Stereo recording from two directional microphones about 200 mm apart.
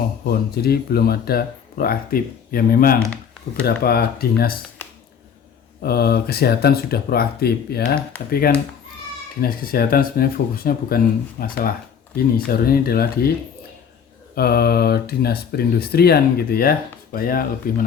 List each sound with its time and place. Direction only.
0.3 s speech: 50° left (ahead or behind)
5.8 s speech: 50° left (ahead or behind)
14.3 s speech: 50° left (ahead or behind)